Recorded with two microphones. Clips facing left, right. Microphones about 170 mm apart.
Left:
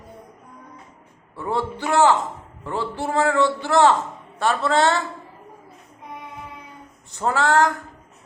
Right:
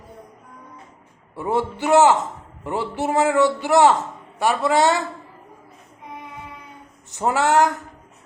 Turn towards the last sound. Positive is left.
turn(degrees=-20)  # may be behind; listen again after turning